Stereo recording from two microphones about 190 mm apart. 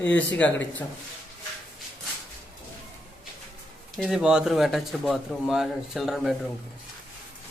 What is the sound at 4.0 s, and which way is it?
A man's voice, centre (ahead or behind).